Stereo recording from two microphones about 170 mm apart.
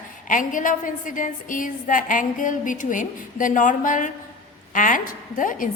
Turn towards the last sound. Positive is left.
turn(degrees=50)  # may be behind; listen again after turning